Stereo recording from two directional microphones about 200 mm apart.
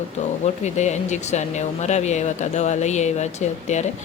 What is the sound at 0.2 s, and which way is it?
Speech, 35° left (ahead or behind).